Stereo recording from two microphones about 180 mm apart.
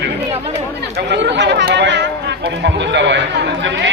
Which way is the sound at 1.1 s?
75° right (ahead or behind).